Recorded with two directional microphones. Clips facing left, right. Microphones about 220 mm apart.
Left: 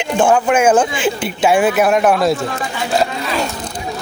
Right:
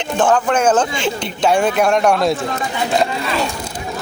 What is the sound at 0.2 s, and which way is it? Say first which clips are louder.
Speech: left 2 dB; 10° left (ahead or behind).